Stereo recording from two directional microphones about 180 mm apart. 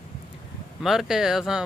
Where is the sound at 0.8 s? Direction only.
Centre (ahead or behind).